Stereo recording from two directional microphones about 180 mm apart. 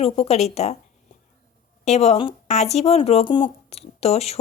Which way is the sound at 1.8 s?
40° left (ahead or behind).